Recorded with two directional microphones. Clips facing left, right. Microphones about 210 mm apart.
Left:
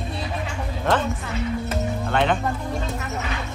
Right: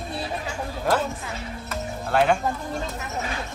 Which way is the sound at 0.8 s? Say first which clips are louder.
Left 1 dB; 5° right (ahead or behind).